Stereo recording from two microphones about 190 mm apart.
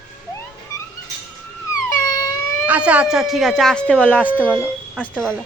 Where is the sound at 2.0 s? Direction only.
15° left (ahead or behind).